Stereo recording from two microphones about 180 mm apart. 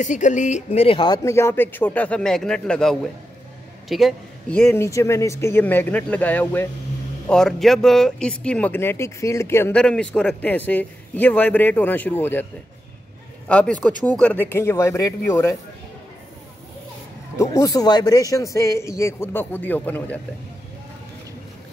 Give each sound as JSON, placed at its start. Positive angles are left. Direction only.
{"t": 0.0, "sound": "speech", "side_deg": 45}
{"t": 13.5, "sound": "speech", "side_deg": 5}
{"t": 17.4, "sound": "speech", "side_deg": 20}